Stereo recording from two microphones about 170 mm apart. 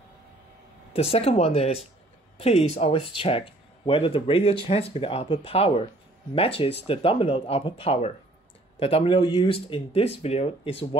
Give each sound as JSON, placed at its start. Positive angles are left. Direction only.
{"t": 0.9, "sound": "speech", "side_deg": 35}